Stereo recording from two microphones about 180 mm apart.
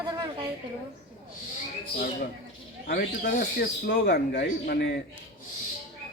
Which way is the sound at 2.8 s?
60° left (ahead or behind).